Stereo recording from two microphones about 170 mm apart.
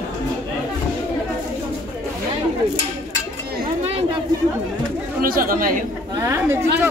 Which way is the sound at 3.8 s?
35° right (ahead or behind).